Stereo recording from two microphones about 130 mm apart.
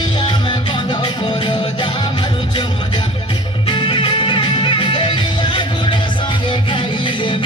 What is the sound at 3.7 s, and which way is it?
Music, 40° left (ahead or behind).